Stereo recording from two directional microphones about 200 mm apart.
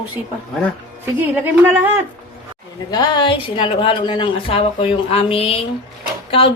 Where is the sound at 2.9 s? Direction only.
20° left (ahead or behind).